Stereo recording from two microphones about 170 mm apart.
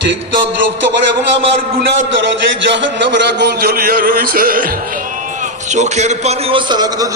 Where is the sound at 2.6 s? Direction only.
90° right.